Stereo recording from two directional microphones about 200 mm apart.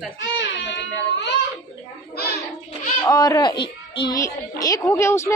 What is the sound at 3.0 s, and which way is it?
A woman's voice, 20° left (ahead or behind).